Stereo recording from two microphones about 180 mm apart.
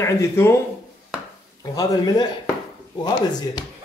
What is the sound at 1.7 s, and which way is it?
Speech, 20° left (ahead or behind).